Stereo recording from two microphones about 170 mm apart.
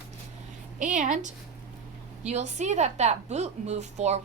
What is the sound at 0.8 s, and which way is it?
A woman's voice, 45° right (ahead or behind).